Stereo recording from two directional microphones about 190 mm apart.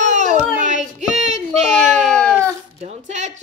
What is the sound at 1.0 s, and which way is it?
Child singing, 35° right (ahead or behind).